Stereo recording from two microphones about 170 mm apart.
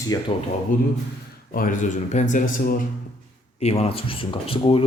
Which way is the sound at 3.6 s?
35° left (ahead or behind).